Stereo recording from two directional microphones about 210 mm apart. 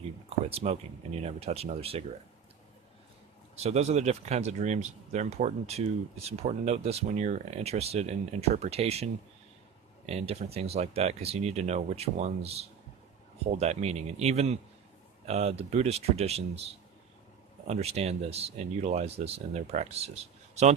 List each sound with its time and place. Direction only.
0.3 s speech: 30° right (ahead or behind)
3.6 s speech: 30° right (ahead or behind)
10.1 s speech: 30° right (ahead or behind)
17.7 s speech: 30° right (ahead or behind)